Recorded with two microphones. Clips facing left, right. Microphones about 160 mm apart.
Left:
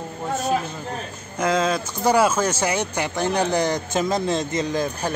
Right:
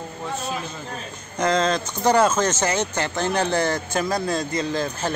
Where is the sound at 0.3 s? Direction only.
40° left (ahead or behind).